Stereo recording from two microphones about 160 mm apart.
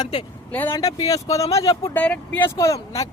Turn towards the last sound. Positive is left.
turn(degrees=20)  # may be behind; listen again after turning